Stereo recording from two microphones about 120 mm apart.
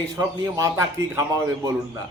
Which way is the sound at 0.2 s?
30° right (ahead or behind).